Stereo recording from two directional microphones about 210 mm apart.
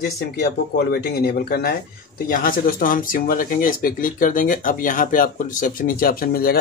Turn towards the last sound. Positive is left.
turn(degrees=45)  # may be behind; listen again after turning